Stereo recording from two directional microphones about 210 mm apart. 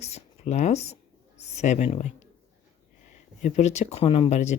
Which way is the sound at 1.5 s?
35° left (ahead or behind).